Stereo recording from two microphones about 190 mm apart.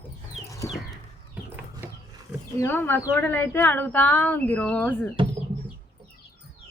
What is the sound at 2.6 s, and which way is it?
A woman's voice, 10° left (ahead or behind).